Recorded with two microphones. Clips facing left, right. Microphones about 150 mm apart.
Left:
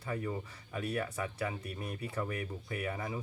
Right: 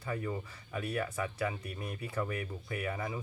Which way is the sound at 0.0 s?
35° left (ahead or behind).